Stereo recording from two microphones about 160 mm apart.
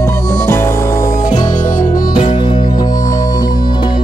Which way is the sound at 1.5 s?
50° left (ahead or behind).